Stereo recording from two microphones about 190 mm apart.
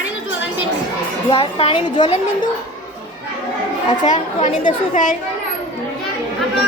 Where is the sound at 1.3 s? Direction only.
30° left (ahead or behind).